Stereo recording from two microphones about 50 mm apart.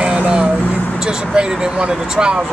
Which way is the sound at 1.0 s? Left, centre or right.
Centre.